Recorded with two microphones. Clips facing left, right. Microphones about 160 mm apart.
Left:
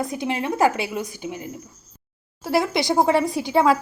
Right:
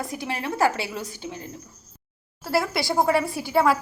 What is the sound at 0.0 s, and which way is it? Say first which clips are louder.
A woman's voice: left 5 dB; 20° left (ahead or behind).